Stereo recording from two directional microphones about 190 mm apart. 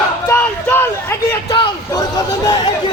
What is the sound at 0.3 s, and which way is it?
Crowd, 10° left (ahead or behind).